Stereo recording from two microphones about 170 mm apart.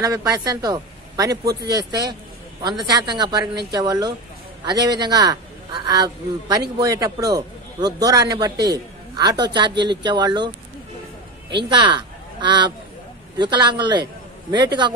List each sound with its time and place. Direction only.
0.0 s a man's voice: 20° right (ahead or behind)
11.7 s a man's voice: 30° right (ahead or behind)